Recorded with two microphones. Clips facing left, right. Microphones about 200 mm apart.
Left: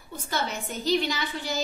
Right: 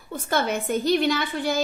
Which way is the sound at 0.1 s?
55° right (ahead or behind).